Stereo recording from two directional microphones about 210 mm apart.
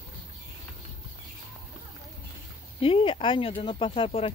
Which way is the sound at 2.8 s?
25° left (ahead or behind).